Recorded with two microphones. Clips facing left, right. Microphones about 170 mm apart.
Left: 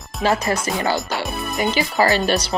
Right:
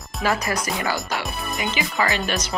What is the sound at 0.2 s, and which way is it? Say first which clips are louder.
Speech: left 4 dB; 25° left (ahead or behind).